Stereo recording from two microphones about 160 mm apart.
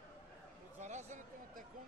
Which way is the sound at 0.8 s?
50° right (ahead or behind).